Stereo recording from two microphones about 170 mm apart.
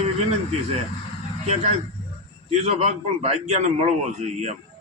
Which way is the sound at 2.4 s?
40° right (ahead or behind).